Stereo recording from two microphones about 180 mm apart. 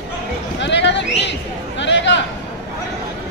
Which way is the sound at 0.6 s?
75° left (ahead or behind).